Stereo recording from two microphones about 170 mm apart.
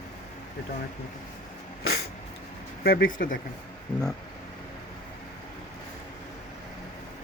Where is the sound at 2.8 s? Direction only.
60° left (ahead or behind).